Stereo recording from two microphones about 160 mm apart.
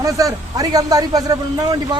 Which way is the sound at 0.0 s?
20° right (ahead or behind).